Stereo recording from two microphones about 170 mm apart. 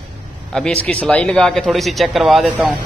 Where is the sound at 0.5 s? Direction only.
5° left (ahead or behind).